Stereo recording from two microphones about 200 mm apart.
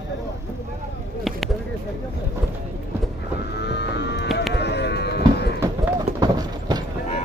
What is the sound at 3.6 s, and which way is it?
Music, 60° left (ahead or behind).